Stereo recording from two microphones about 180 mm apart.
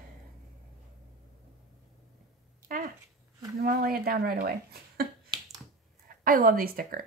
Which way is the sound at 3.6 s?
55° right (ahead or behind).